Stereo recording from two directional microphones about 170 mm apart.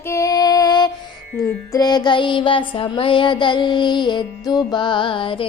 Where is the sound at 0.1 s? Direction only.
20° left (ahead or behind).